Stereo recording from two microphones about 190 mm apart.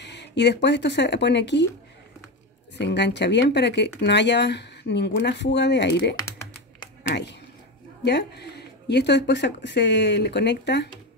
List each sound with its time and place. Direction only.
0.0 s speech: 65° left (ahead or behind)
2.8 s speech: 65° left (ahead or behind)
6.1 s typing: 20° left (ahead or behind)
7.0 s speech: 65° left (ahead or behind)